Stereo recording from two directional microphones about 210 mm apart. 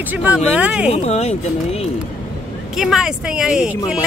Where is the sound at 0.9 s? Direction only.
30° left (ahead or behind).